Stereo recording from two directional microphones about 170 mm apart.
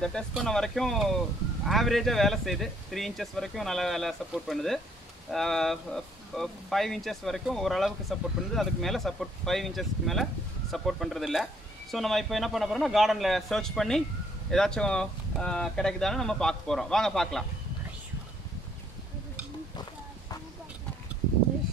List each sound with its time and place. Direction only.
0.0 s speech: 5° left (ahead or behind)